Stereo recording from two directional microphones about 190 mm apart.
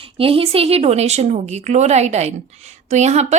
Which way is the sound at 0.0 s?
30° right (ahead or behind).